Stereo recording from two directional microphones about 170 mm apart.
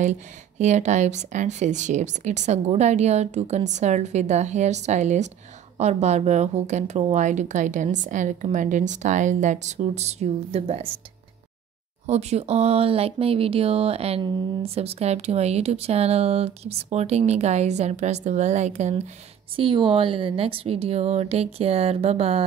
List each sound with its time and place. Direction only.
0.0 s speech: 45° right (ahead or behind)
12.1 s speech: 40° right (ahead or behind)
19.5 s speech: 30° right (ahead or behind)